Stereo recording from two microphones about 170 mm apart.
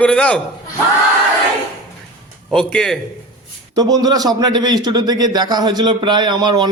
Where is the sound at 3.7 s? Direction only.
20° right (ahead or behind).